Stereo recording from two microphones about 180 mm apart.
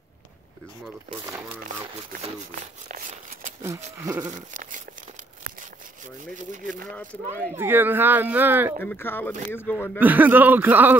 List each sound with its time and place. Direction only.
4.0 s sheep: 20° right (ahead or behind)
4.4 s sheep: 45° right (ahead or behind)
6.3 s sheep: 45° right (ahead or behind)
6.9 s speech: 5° left (ahead or behind)
7.5 s speech: 10° right (ahead or behind)
8.8 s speech: 10° left (ahead or behind)
9.9 s speech: 10° right (ahead or behind)